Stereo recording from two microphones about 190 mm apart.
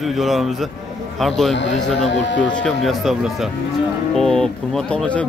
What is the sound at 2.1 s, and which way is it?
Speech, 70° left (ahead or behind).